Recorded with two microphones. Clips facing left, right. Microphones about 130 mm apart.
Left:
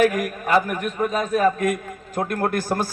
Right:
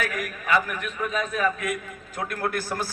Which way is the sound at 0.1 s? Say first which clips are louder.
Left 5 dB; 45° left (ahead or behind).